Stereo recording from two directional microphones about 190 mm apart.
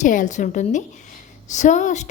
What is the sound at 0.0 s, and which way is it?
A woman's voice, 40° left (ahead or behind).